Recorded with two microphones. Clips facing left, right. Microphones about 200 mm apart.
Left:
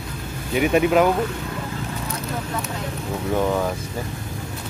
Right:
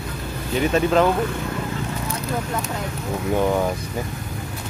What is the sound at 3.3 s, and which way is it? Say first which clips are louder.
Speech: right 1 dB; 10° right (ahead or behind).